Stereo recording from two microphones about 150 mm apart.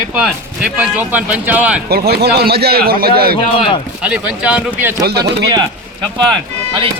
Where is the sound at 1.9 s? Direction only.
90° right.